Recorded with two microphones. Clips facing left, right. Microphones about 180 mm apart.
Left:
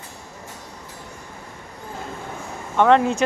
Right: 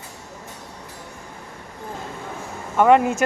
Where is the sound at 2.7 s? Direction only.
5° right (ahead or behind).